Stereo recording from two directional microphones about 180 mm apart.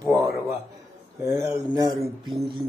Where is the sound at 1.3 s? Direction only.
15° right (ahead or behind).